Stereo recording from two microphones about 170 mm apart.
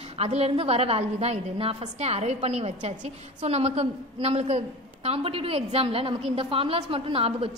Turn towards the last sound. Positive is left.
turn(degrees=-35)  # may be behind; listen again after turning